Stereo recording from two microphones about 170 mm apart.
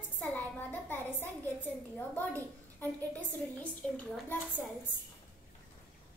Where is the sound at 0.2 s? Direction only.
10° left (ahead or behind).